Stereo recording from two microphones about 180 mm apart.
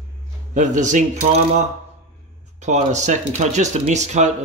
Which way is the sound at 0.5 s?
45° right (ahead or behind).